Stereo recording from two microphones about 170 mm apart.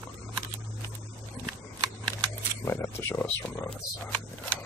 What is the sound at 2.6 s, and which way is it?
Speech, 15° left (ahead or behind).